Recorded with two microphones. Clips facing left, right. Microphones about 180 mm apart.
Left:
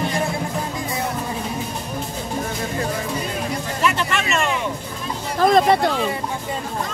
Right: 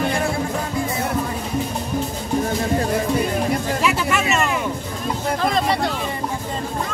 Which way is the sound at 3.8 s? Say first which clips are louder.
Right 1 dB; 10° right (ahead or behind).